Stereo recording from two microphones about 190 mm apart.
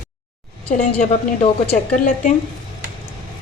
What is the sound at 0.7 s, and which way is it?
A woman's voice, 35° left (ahead or behind).